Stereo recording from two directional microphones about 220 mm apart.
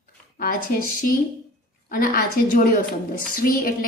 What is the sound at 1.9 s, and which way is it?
A woman's voice, 40° left (ahead or behind).